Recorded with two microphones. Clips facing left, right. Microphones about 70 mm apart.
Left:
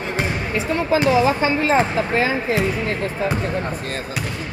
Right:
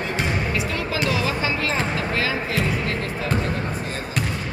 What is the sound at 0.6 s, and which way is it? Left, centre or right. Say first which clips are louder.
Speech: left 6 dB; left.